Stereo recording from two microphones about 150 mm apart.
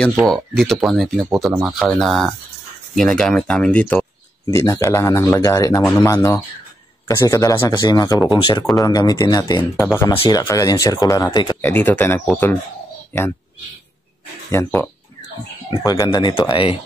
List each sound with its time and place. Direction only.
0.3 s speech: centre (ahead or behind)
4.5 s speech: 20° left (ahead or behind)
11.6 s speech: 15° left (ahead or behind)
14.5 s speech: 15° left (ahead or behind); by 16.7 s 35° left (ahead or behind)